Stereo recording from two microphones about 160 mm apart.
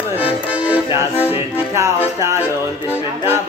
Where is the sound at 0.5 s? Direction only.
10° right (ahead or behind).